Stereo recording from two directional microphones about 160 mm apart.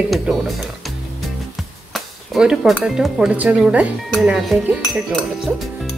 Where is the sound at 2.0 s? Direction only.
5° right (ahead or behind).